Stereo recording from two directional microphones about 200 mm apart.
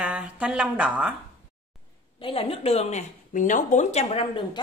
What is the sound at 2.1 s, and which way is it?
Speech, 25° left (ahead or behind).